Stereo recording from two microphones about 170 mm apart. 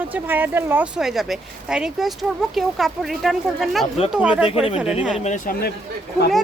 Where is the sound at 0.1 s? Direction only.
10° right (ahead or behind).